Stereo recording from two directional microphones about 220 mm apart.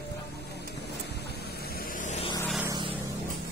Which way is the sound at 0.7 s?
50° left (ahead or behind).